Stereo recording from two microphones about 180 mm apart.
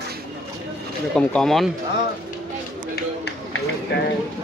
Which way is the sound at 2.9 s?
70° left (ahead or behind).